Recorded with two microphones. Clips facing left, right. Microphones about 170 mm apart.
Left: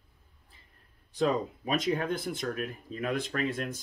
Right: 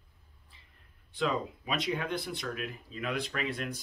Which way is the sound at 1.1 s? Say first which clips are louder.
Left 4 dB; 40° left (ahead or behind).